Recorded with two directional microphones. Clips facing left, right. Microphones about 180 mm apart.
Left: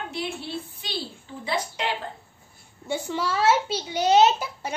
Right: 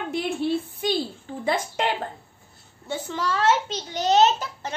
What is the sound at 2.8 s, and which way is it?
A child's voice, 10° left (ahead or behind).